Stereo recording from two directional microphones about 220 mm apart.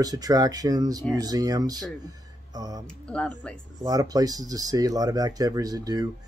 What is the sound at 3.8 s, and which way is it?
Speech, 15° right (ahead or behind).